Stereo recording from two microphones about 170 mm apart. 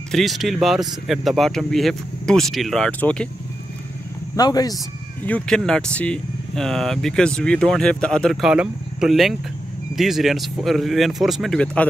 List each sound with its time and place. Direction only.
0.1 s speech: centre (ahead or behind)
4.4 s speech: 25° left (ahead or behind)
5.2 s speech: 5° left (ahead or behind)